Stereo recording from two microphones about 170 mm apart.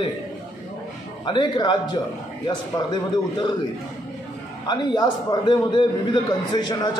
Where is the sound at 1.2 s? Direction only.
30° left (ahead or behind).